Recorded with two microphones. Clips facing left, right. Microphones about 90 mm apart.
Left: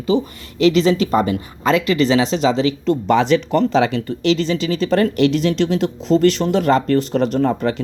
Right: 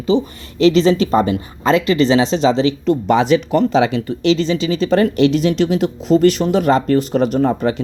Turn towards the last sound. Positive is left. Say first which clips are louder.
# right 2 dB
turn(degrees=-20)  # may be behind; listen again after turning